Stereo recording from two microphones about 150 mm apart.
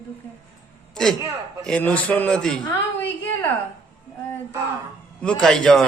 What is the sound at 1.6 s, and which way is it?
Mantra, 5° left (ahead or behind).